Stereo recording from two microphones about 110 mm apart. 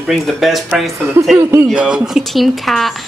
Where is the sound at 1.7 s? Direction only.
10° right (ahead or behind).